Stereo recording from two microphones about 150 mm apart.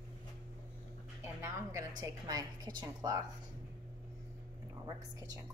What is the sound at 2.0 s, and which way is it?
A woman's voice, 25° right (ahead or behind).